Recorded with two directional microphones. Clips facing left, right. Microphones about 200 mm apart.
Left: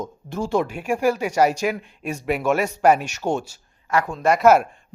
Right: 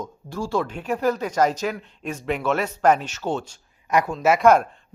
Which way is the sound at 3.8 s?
15° right (ahead or behind).